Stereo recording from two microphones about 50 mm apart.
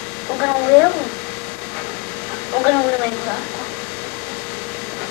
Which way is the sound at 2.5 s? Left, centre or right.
Left.